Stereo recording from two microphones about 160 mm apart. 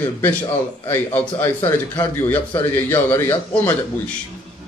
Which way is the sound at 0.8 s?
15° left (ahead or behind).